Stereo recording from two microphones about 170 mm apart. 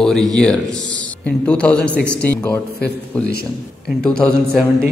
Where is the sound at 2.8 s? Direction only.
70° left (ahead or behind).